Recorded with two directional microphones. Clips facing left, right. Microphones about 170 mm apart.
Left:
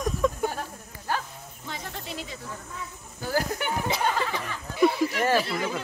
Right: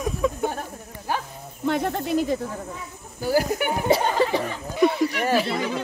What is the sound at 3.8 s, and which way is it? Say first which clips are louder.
Speech: right 9 dB; 40° right (ahead or behind).